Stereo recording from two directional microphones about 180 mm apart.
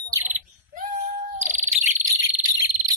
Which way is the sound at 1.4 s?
45° right (ahead or behind).